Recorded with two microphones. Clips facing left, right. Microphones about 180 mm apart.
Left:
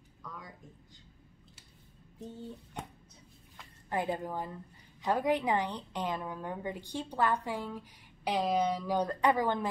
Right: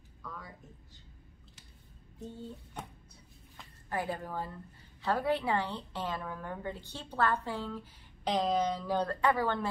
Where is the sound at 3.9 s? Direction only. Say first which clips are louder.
Left 2 dB; 20° left (ahead or behind).